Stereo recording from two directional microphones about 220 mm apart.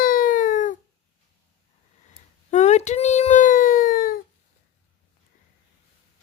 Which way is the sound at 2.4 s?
30° left (ahead or behind).